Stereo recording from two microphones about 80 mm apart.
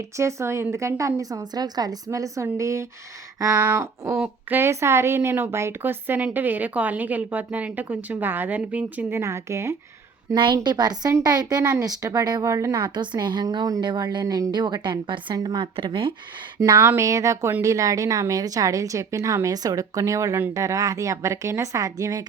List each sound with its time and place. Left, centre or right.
0.2 s a woman's voice: right
2.0 s a woman's voice: right
3.6 s a woman's voice: right
4.7 s a woman's voice: right
9.1 s a woman's voice: right
10.3 s speech: right
12.7 s speech: right
13.8 s speech: right
14.3 s speech: right
15.4 s speech: right
16.7 s a woman's voice: right